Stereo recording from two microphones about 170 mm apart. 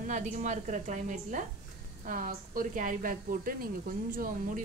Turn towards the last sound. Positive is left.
turn(degrees=-55)  # may be behind; listen again after turning